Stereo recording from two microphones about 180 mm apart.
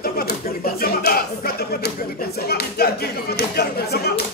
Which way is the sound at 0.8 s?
55° left (ahead or behind).